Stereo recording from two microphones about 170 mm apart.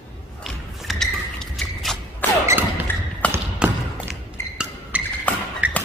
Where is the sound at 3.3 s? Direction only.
10° right (ahead or behind).